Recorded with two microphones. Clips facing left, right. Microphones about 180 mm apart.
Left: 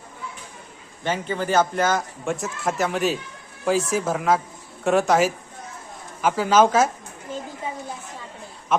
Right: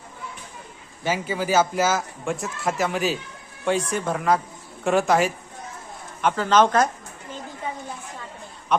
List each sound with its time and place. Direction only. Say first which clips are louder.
1.0 s a man's voice: even; 5° right (ahead or behind)